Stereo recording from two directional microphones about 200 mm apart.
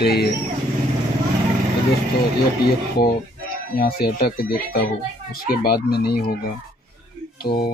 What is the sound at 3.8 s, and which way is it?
Speech, 50° left (ahead or behind).